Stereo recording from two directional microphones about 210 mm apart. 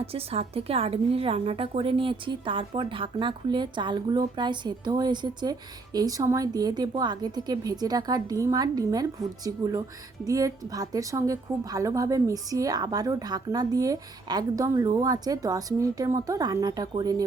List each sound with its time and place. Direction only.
0.0 s a woman's voice: 30° right (ahead or behind)